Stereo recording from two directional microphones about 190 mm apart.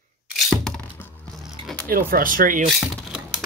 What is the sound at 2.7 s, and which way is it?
Typing, 5° right (ahead or behind).